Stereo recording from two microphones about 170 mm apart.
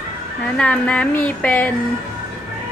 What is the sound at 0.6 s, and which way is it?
A woman's voice, 5° left (ahead or behind).